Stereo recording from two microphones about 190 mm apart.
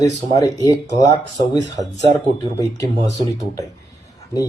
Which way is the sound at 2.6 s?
20° left (ahead or behind).